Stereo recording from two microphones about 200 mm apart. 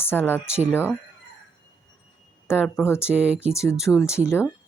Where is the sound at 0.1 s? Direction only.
Centre (ahead or behind).